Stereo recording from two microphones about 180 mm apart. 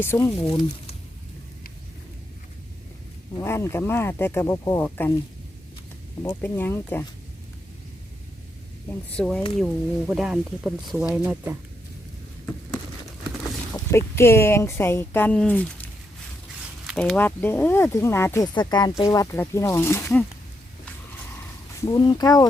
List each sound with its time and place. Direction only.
0.0 s speech: 15° left (ahead or behind)
3.3 s speech: 15° left (ahead or behind)
6.2 s speech: 10° left (ahead or behind)
9.1 s speech: 5° left (ahead or behind); by 11.5 s 10° right (ahead or behind)
13.7 s speech: 15° left (ahead or behind)
21.8 s speech: 20° left (ahead or behind)